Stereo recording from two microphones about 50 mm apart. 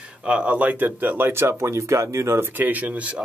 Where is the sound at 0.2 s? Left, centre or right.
Right.